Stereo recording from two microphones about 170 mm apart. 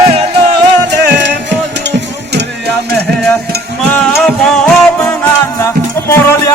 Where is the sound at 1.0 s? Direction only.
90° right.